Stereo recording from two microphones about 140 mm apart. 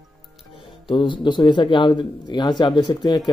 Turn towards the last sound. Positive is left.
turn(degrees=30)  # may be behind; listen again after turning